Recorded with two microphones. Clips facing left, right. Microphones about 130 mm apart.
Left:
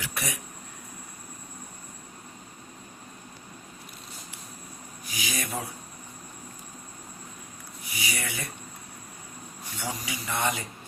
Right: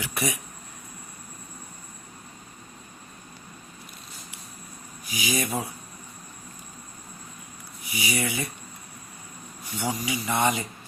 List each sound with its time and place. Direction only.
0.0 s a sound: 15° right (ahead or behind)
5.1 s speech: 10° right (ahead or behind)
7.9 s speech: 15° right (ahead or behind)
9.7 s speech: 15° right (ahead or behind)